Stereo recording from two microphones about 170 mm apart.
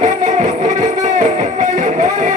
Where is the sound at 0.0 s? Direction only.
45° right (ahead or behind).